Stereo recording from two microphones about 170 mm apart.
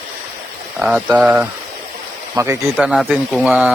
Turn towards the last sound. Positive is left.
turn(degrees=-10)  # may be behind; listen again after turning